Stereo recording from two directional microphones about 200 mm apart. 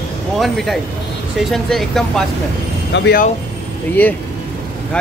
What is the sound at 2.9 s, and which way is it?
Speech, 60° left (ahead or behind).